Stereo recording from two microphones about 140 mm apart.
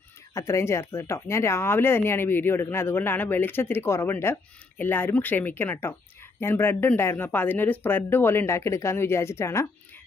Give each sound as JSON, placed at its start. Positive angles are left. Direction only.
{"t": 0.3, "sound": "speech", "side_deg": 20}